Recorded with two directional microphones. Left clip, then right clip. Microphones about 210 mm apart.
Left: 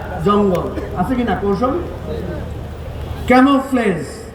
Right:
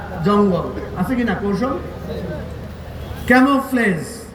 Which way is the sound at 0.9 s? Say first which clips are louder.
Left 3 dB; 45° right (ahead or behind).